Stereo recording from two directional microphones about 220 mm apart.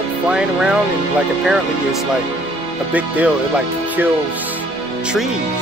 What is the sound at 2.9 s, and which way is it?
Speech, 5° right (ahead or behind).